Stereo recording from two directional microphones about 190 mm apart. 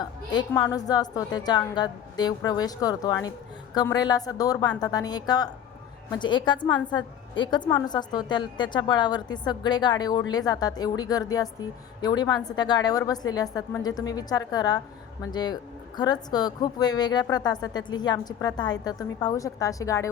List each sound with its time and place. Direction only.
0.3 s a woman's voice: 20° left (ahead or behind)